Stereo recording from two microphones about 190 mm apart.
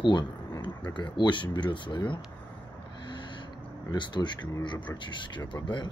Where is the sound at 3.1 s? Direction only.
25° left (ahead or behind).